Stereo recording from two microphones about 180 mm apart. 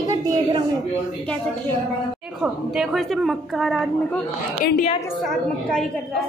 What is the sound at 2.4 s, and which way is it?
A woman's voice, centre (ahead or behind).